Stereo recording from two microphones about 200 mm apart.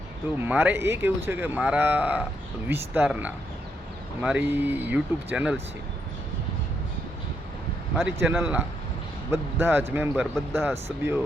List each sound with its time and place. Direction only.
0.4 s speech: 10° right (ahead or behind)
8.2 s speech: 10° right (ahead or behind)